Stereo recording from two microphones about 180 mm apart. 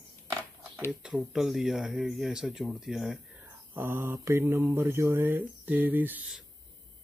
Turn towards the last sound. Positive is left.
turn(degrees=-5)  # may be behind; listen again after turning